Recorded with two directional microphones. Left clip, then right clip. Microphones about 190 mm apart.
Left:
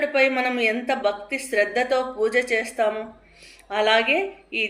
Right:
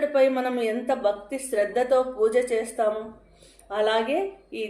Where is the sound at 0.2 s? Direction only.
20° right (ahead or behind).